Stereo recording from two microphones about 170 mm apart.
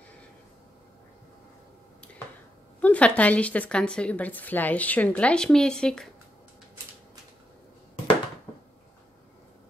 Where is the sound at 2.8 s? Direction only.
10° left (ahead or behind).